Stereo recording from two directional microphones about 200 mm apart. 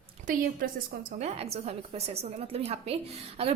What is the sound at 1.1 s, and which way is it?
A woman's voice, 30° right (ahead or behind).